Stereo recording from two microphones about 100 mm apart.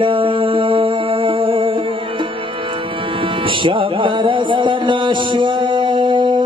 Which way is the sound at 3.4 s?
55° right (ahead or behind).